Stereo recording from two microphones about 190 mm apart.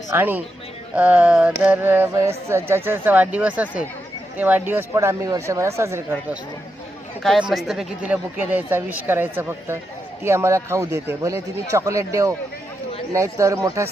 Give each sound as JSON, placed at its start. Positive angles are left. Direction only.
{"t": 0.1, "sound": "speech", "side_deg": -10}
{"t": 7.2, "sound": "speech", "side_deg": 0}